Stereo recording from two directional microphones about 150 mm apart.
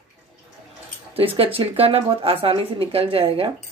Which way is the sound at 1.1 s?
40° right (ahead or behind).